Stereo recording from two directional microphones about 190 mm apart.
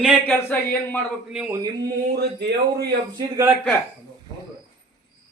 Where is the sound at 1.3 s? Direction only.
5° right (ahead or behind).